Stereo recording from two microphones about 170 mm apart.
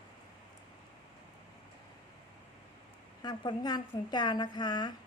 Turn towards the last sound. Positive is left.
turn(degrees=25)  # may be behind; listen again after turning